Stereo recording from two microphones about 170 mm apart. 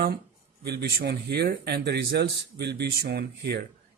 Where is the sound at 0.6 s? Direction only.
75° right (ahead or behind).